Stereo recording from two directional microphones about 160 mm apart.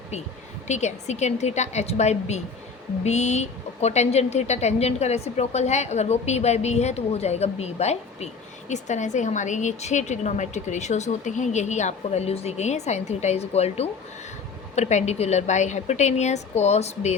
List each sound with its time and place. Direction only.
0.7 s a woman's voice: 45° left (ahead or behind)